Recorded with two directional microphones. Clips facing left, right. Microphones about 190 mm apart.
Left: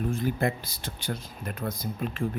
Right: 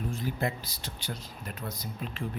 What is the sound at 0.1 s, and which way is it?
Speech, 50° left (ahead or behind).